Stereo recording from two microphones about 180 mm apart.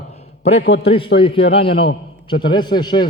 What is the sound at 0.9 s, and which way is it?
A man's voice, 30° left (ahead or behind).